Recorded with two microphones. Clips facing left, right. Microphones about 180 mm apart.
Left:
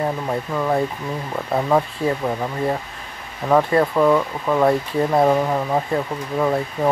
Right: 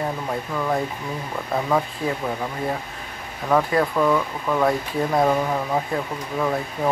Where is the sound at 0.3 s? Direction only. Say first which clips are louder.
Left 3 dB; 15° left (ahead or behind).